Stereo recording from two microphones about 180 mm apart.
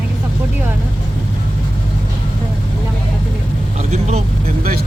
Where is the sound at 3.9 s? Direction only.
40° right (ahead or behind).